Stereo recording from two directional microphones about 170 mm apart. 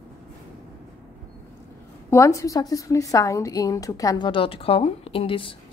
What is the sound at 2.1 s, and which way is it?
A woman's voice, 20° left (ahead or behind).